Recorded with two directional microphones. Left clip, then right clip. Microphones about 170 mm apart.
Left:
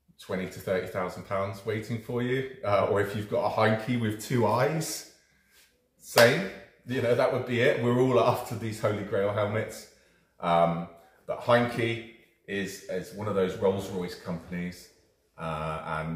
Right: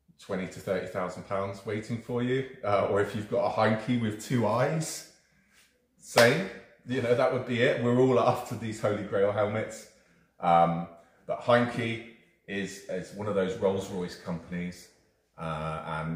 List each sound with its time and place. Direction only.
0.3 s speech: 10° left (ahead or behind)
6.9 s speech: 10° left (ahead or behind)